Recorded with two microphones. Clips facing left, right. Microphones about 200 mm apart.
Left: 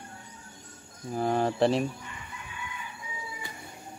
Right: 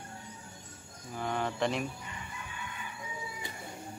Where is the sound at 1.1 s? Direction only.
35° left (ahead or behind).